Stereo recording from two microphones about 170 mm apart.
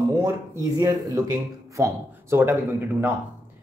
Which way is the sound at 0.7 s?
20° right (ahead or behind).